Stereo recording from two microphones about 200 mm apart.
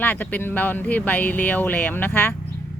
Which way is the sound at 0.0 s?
10° left (ahead or behind).